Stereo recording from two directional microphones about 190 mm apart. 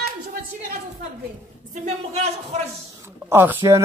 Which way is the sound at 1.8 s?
35° right (ahead or behind).